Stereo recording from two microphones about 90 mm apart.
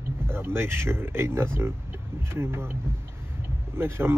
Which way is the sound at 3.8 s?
25° right (ahead or behind).